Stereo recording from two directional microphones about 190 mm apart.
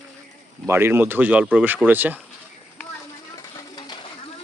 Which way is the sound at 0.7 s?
10° right (ahead or behind).